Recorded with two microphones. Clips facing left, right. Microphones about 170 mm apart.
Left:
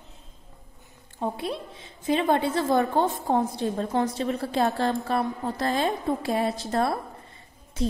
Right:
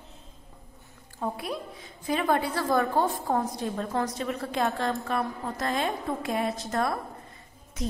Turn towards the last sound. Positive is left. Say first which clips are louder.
# left 5 dB
turn(degrees=30)  # may be behind; listen again after turning